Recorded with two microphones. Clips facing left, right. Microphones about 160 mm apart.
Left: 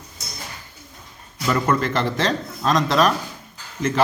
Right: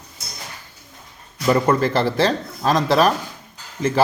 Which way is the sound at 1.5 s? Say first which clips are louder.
Right 4 dB; 30° right (ahead or behind).